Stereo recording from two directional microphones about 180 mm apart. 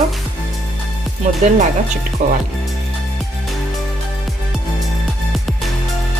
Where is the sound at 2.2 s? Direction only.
45° right (ahead or behind).